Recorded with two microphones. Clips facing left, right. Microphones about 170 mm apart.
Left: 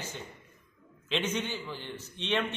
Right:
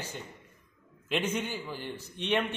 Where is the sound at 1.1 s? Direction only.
10° right (ahead or behind).